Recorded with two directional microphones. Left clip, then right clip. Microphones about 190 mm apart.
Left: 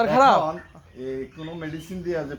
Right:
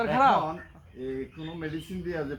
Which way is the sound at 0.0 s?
60° left (ahead or behind).